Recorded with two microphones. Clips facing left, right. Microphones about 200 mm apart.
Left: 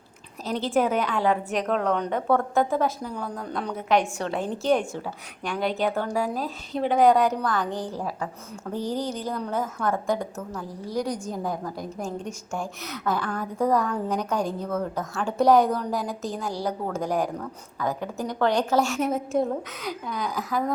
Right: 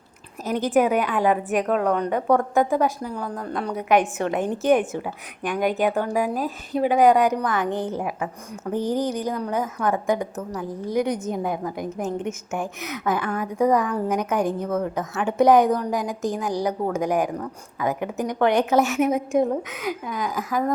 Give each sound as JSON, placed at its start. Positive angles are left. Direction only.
{"t": 0.4, "sound": "a woman's voice", "side_deg": -15}